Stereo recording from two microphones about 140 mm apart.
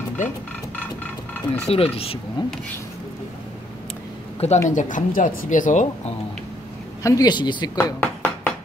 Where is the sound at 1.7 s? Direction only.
45° left (ahead or behind).